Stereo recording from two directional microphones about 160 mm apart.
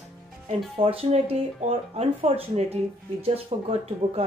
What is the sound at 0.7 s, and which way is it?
Speech, 40° right (ahead or behind).